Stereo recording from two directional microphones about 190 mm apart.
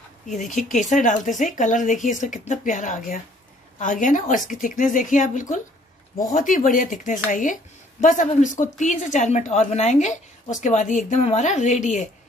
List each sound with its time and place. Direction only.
0.3 s a woman's voice: 40° left (ahead or behind)